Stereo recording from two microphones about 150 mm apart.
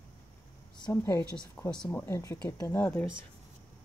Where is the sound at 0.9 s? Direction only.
15° left (ahead or behind).